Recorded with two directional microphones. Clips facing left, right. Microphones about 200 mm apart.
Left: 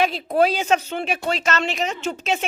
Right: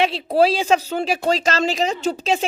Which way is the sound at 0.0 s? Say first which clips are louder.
Right 2 dB; 30° right (ahead or behind).